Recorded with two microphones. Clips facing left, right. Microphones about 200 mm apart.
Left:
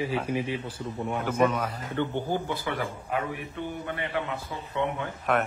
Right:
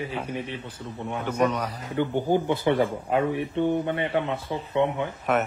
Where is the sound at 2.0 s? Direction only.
15° right (ahead or behind).